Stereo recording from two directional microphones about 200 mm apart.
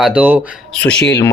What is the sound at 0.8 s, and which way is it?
Speech, 5° left (ahead or behind).